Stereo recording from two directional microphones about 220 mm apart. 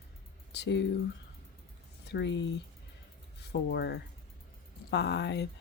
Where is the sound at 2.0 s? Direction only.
50° left (ahead or behind).